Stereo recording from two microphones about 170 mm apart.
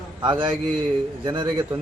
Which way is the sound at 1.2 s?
25° right (ahead or behind).